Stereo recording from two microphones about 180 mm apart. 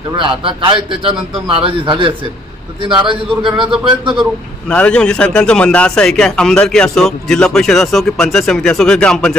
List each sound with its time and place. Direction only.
0.2 s a man's voice: 30° right (ahead or behind)
4.6 s a man's voice: 5° left (ahead or behind)